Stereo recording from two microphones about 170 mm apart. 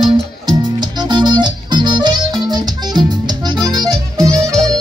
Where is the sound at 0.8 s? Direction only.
25° right (ahead or behind).